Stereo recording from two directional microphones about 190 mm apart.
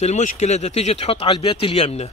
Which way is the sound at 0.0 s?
40° left (ahead or behind).